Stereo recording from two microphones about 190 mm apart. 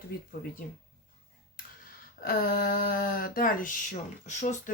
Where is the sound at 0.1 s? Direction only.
50° left (ahead or behind).